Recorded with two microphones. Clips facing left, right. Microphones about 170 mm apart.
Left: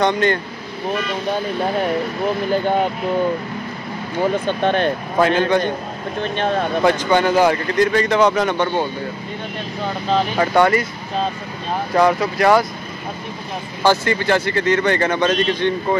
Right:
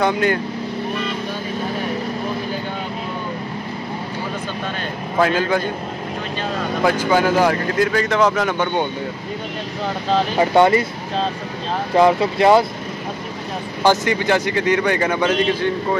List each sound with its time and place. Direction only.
0.0 s speech: 5° right (ahead or behind)
5.2 s speech: 5° right (ahead or behind)
6.3 s speech: 60° left (ahead or behind)
6.8 s speech: 5° right (ahead or behind)
10.4 s speech: 20° right (ahead or behind)
11.9 s speech: 25° right (ahead or behind)
13.8 s speech: 15° right (ahead or behind)